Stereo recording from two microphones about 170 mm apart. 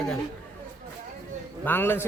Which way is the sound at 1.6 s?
10° left (ahead or behind).